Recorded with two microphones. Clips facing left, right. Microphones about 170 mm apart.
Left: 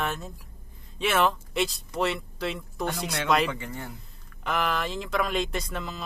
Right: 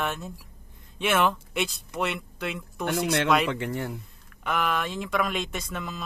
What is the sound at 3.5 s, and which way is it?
Speech, 70° right (ahead or behind).